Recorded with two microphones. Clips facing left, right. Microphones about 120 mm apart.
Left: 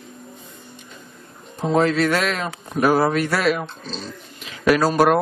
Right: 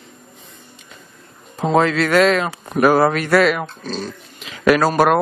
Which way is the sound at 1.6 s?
90° right.